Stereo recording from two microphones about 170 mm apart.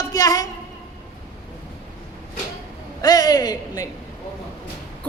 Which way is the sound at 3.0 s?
20° left (ahead or behind).